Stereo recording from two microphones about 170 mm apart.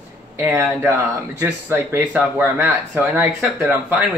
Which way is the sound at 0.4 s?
15° right (ahead or behind).